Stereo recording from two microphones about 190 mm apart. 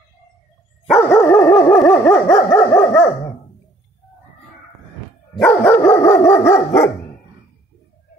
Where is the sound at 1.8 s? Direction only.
5° left (ahead or behind).